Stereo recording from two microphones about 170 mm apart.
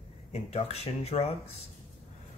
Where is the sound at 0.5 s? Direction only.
35° left (ahead or behind).